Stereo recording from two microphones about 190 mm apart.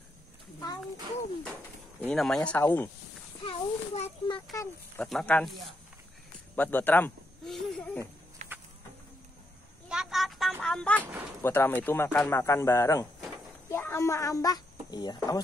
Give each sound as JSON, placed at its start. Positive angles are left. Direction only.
{"t": 2.0, "sound": "speech", "side_deg": 5}
{"t": 3.4, "sound": "a child's voice", "side_deg": 30}
{"t": 4.6, "sound": "speech", "side_deg": 5}
{"t": 6.5, "sound": "a sound", "side_deg": 10}
{"t": 8.4, "sound": "insect", "side_deg": -35}
{"t": 9.8, "sound": "a sound", "side_deg": 0}
{"t": 10.6, "sound": "speech", "side_deg": 5}
{"t": 11.0, "sound": "speech", "side_deg": -10}
{"t": 11.4, "sound": "speech", "side_deg": 10}